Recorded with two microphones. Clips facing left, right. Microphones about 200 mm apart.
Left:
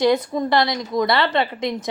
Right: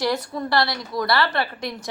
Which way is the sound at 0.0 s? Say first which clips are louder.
Left 6 dB; 20° left (ahead or behind).